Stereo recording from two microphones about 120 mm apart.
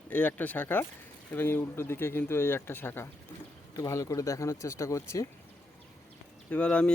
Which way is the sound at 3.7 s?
30° left (ahead or behind).